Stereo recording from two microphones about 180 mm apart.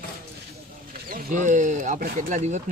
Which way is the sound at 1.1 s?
50° right (ahead or behind).